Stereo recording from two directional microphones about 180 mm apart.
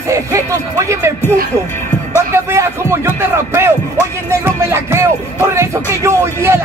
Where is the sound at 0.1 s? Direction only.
15° right (ahead or behind).